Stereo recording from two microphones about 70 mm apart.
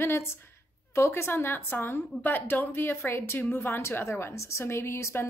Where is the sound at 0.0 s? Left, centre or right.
Left.